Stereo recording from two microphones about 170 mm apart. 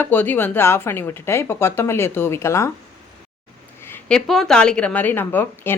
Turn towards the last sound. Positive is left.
turn(degrees=10)  # may be behind; listen again after turning